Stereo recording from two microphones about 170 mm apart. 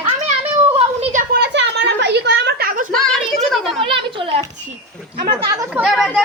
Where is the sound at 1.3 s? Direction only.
75° right (ahead or behind); by 2.9 s 60° right (ahead or behind).